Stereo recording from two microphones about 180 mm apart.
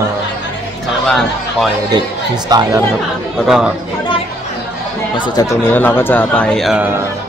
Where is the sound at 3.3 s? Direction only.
5° right (ahead or behind).